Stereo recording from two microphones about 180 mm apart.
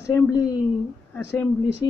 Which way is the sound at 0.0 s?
15° left (ahead or behind).